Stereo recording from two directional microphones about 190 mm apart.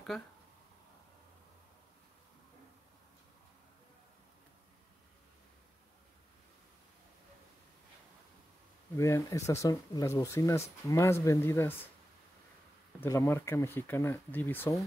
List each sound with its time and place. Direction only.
8.9 s speech: 15° left (ahead or behind)
13.0 s speech: 15° left (ahead or behind)